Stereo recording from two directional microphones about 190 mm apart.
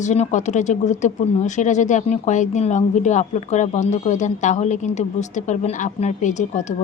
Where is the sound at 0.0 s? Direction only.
40° left (ahead or behind).